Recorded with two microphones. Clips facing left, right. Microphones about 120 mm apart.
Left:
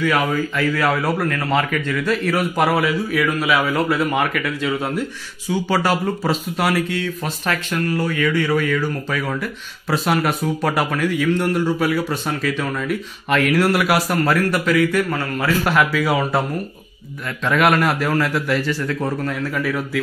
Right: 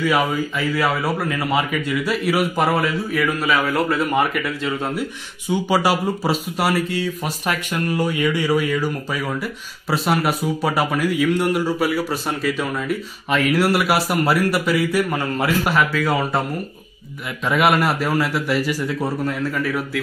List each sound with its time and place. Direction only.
0.0 s speech: 5° right (ahead or behind)
15.6 s speech: centre (ahead or behind)
17.5 s speech: 5° right (ahead or behind)